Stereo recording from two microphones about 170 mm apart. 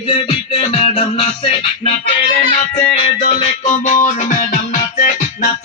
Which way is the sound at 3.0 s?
40° left (ahead or behind).